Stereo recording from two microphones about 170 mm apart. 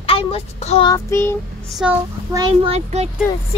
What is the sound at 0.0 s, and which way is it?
Child singing, 35° left (ahead or behind).